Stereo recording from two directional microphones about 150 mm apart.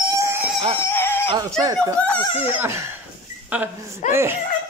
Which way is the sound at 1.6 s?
25° right (ahead or behind).